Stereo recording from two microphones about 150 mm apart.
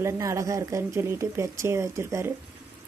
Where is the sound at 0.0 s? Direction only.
20° right (ahead or behind).